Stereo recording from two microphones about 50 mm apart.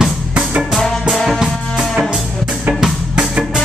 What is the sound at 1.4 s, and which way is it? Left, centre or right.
Music, centre.